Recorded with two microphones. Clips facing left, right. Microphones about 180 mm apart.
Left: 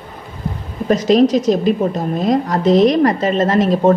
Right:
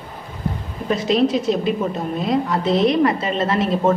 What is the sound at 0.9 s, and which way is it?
A woman's voice, 40° left (ahead or behind).